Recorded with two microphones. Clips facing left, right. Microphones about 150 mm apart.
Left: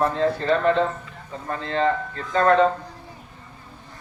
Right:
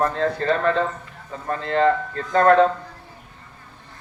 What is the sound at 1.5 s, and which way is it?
Speech, 45° right (ahead or behind).